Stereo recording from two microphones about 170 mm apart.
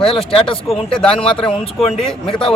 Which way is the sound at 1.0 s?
5° left (ahead or behind).